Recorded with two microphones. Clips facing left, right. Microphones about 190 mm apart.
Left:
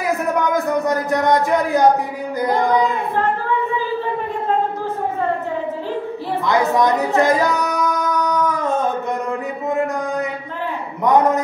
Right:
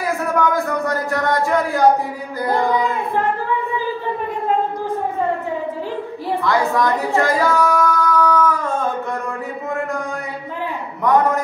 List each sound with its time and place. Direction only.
0.0 s speech: 20° left (ahead or behind)
2.4 s child singing: 20° left (ahead or behind)
6.4 s a sound: 20° left (ahead or behind)
11.1 s a man's voice: 20° left (ahead or behind)